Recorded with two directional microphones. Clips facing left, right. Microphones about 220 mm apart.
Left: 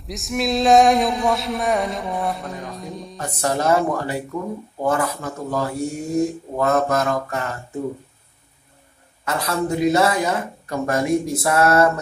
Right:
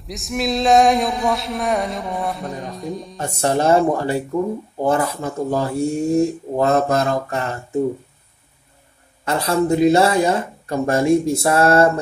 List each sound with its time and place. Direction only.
0.1 s a sound: centre (ahead or behind)
3.2 s speech: 25° right (ahead or behind)
9.2 s speech: 30° right (ahead or behind)